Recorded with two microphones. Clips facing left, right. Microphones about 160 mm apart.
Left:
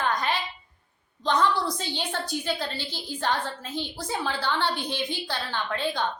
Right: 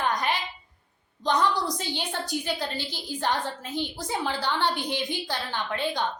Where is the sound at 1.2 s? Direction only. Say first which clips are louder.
Left 1 dB; 15° right (ahead or behind).